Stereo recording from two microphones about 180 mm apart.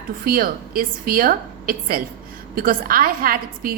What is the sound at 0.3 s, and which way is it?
A woman's voice, 55° right (ahead or behind).